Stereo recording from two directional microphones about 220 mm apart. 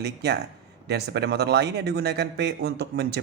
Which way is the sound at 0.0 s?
50° right (ahead or behind).